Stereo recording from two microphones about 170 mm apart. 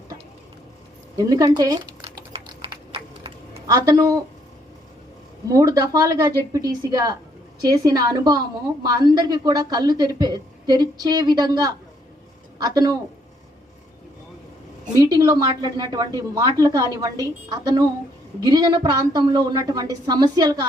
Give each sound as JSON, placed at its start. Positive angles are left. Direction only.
{"t": 1.5, "sound": "speech", "side_deg": -25}
{"t": 2.0, "sound": "typing", "side_deg": -35}
{"t": 5.5, "sound": "a woman's voice", "side_deg": -20}
{"t": 14.9, "sound": "a woman's voice", "side_deg": -20}